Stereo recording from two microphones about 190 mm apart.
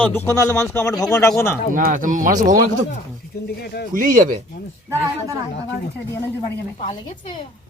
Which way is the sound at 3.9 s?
45° right (ahead or behind).